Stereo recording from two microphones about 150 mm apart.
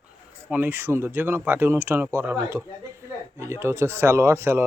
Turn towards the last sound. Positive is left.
turn(degrees=-15)  # may be behind; listen again after turning